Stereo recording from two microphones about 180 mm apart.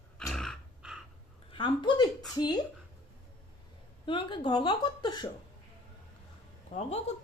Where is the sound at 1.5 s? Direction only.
25° left (ahead or behind).